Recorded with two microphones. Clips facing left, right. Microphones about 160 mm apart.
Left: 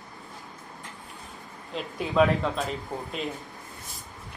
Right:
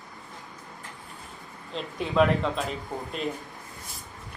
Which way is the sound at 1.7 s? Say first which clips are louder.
Even; 5° left (ahead or behind).